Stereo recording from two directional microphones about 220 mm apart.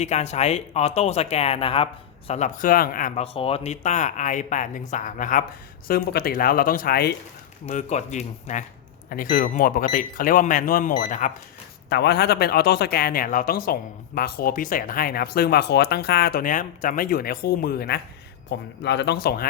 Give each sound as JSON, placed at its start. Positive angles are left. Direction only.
{"t": 0.0, "sound": "speech", "side_deg": 30}
{"t": 3.3, "sound": "speech", "side_deg": 25}
{"t": 7.7, "sound": "speech", "side_deg": 30}
{"t": 11.9, "sound": "speech", "side_deg": 50}